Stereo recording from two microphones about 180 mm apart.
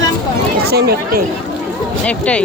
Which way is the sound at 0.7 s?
60° right (ahead or behind).